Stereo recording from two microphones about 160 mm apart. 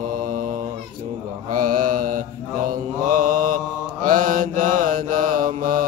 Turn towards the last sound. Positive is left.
turn(degrees=-55)  # may be behind; listen again after turning